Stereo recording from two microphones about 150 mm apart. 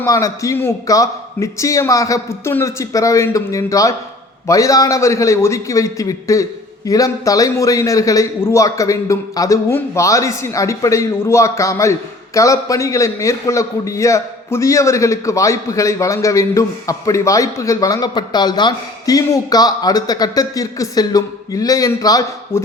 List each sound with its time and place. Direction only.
0.0 s a man's voice: 20° left (ahead or behind)